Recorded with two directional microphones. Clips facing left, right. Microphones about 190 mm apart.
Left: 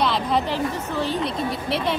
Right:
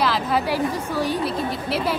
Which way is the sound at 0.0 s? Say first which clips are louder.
Even; 5° right (ahead or behind).